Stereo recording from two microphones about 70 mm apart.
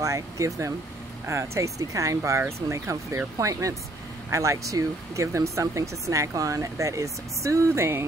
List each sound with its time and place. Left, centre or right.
0.0 s speech: right